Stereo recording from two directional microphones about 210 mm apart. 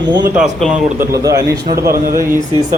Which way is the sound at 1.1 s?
15° right (ahead or behind).